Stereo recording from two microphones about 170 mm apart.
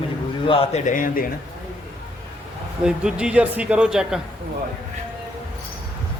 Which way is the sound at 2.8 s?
5° right (ahead or behind).